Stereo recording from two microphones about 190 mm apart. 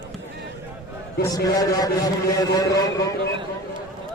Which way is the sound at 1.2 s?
20° left (ahead or behind).